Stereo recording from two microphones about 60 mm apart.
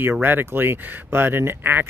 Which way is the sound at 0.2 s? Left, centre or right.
Right.